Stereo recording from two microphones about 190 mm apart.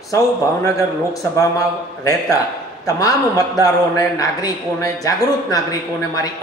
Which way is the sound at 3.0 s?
20° left (ahead or behind).